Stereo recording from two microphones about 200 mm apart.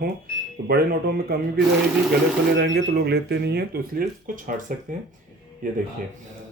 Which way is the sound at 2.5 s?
50° right (ahead or behind).